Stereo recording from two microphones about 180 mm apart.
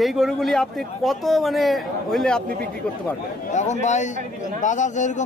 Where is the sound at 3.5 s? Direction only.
40° left (ahead or behind).